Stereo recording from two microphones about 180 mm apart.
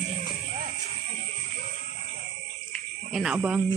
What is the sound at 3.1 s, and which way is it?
Speech, 5° right (ahead or behind).